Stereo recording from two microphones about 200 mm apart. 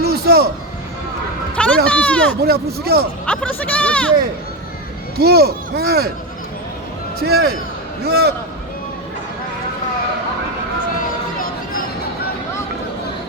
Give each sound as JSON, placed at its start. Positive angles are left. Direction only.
{"t": 0.0, "sound": "a sound", "side_deg": -50}
{"t": 1.5, "sound": "a sound", "side_deg": 5}
{"t": 2.4, "sound": "speech", "side_deg": -50}
{"t": 3.2, "sound": "speech", "side_deg": 5}
{"t": 5.1, "sound": "speech", "side_deg": -50}
{"t": 7.2, "sound": "speech", "side_deg": -50}